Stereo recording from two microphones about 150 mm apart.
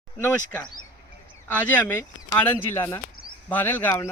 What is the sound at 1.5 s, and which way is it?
Speech, 10° left (ahead or behind).